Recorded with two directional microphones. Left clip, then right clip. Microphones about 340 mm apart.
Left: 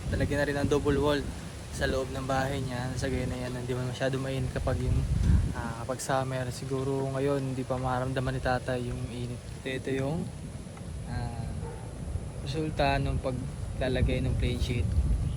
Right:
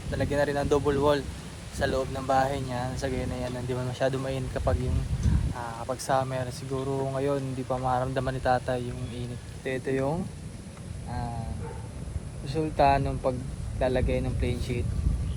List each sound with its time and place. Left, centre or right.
0.1 s speech: centre
9.6 s a man's voice: centre
12.5 s a man's voice: centre